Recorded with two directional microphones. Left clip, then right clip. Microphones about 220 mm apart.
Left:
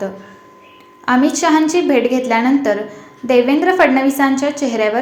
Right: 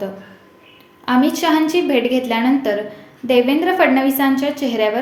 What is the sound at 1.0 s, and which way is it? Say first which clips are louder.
A woman's voice: left 2 dB; 15° left (ahead or behind).